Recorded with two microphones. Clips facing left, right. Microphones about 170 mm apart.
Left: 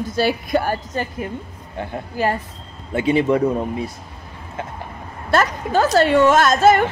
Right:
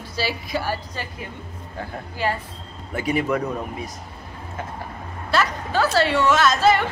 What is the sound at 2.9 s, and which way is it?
Speech, 25° left (ahead or behind).